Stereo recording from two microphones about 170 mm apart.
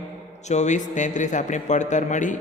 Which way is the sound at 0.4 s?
45° left (ahead or behind).